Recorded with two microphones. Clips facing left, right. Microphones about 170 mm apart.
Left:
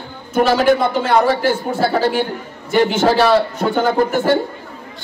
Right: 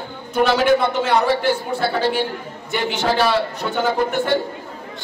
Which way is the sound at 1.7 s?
45° left (ahead or behind).